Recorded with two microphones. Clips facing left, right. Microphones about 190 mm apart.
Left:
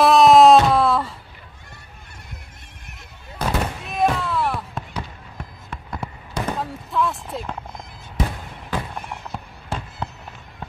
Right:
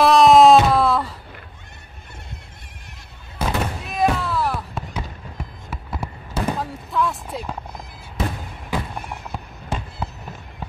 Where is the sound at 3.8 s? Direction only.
Centre (ahead or behind).